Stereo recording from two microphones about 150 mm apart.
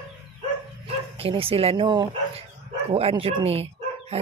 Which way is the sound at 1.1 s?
40° right (ahead or behind).